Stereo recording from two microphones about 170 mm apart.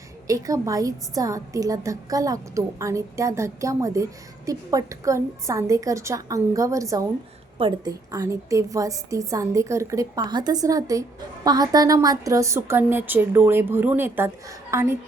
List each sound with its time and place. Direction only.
0.3 s a woman's voice: 20° right (ahead or behind)